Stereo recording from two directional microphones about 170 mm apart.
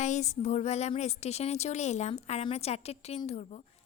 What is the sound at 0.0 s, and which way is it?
A woman's voice, 45° left (ahead or behind).